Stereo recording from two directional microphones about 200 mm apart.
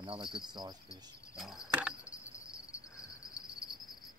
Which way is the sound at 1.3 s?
Centre (ahead or behind).